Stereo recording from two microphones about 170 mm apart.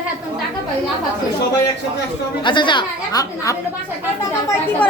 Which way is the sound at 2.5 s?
30° left (ahead or behind).